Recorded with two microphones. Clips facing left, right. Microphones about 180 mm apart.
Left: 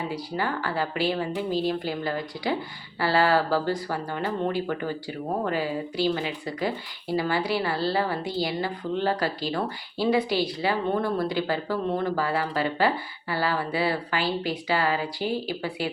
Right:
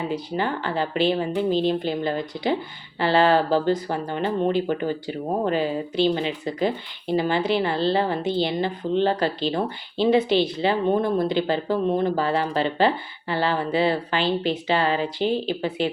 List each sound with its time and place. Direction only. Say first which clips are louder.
0.1 s speech: right 3 dB; 20° right (ahead or behind)